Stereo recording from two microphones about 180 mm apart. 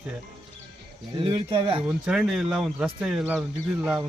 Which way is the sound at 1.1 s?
30° right (ahead or behind).